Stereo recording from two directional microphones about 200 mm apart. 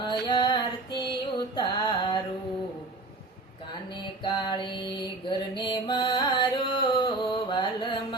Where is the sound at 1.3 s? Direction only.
20° left (ahead or behind).